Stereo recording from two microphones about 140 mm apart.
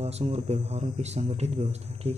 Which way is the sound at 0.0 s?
50° right (ahead or behind).